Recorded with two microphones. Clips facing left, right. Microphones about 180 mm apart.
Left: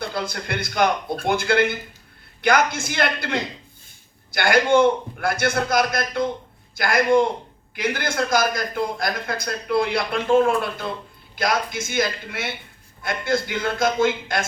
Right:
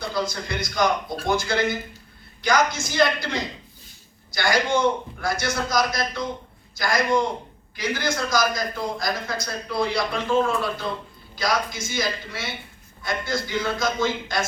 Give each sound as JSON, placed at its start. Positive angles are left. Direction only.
{"t": 0.1, "sound": "a man's voice", "side_deg": 55}